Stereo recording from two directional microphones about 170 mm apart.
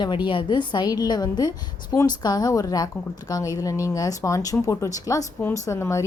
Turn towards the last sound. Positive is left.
turn(degrees=15)  # may be behind; listen again after turning